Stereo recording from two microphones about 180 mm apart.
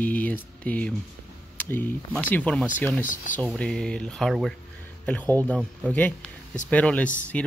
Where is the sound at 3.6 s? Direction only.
5° left (ahead or behind).